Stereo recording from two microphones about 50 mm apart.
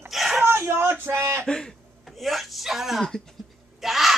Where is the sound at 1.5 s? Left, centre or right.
Centre.